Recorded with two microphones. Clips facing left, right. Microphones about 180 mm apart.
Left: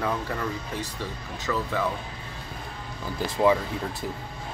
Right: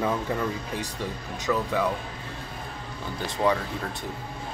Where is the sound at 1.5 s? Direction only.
5° right (ahead or behind).